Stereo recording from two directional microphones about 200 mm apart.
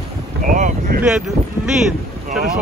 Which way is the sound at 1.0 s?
5° right (ahead or behind).